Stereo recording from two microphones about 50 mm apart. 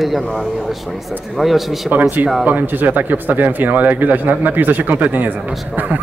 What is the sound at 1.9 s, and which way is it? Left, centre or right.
Speech, right.